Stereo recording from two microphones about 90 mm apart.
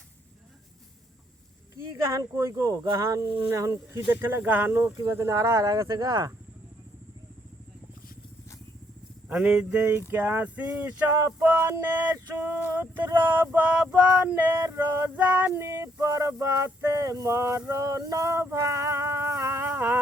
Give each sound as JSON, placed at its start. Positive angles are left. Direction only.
{"t": 1.7, "sound": "female singing", "side_deg": -35}
{"t": 3.2, "sound": "speech", "side_deg": -65}
{"t": 3.5, "sound": "female singing", "side_deg": -35}
{"t": 4.2, "sound": "male singing", "side_deg": -20}
{"t": 4.7, "sound": "female singing", "side_deg": -35}
{"t": 9.3, "sound": "a sound", "side_deg": -10}
{"t": 10.1, "sound": "a sound", "side_deg": -20}
{"t": 11.7, "sound": "male singing", "side_deg": -20}
{"t": 13.9, "sound": "a sound", "side_deg": -15}
{"t": 14.7, "sound": "female singing", "side_deg": -30}
{"t": 15.1, "sound": "female singing", "side_deg": -15}